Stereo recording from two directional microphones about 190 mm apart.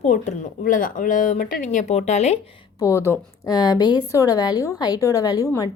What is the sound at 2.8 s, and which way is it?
A woman's voice, 15° left (ahead or behind).